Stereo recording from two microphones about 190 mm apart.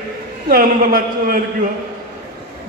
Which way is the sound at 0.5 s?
50° right (ahead or behind).